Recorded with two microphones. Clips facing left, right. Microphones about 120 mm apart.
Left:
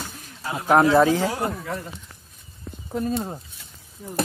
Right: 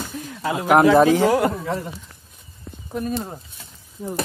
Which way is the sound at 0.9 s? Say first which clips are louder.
Right 3 dB; 20° right (ahead or behind).